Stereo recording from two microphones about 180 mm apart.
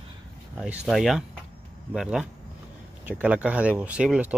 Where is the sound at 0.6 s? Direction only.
Centre (ahead or behind).